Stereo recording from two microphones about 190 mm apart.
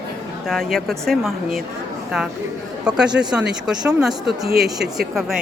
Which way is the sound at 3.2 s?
10° right (ahead or behind).